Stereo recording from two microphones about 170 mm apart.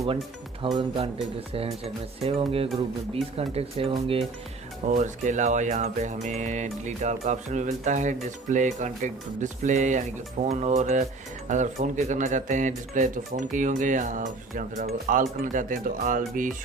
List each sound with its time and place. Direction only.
0.6 s speech: 30° right (ahead or behind)
4.9 s speech: 45° right (ahead or behind)